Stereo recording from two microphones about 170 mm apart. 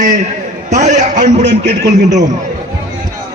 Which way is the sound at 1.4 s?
85° right.